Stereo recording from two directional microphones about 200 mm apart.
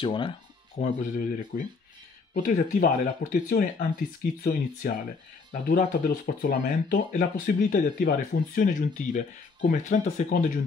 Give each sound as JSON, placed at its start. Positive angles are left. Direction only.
{"t": 0.0, "sound": "speech", "side_deg": 25}
{"t": 0.7, "sound": "speech", "side_deg": 40}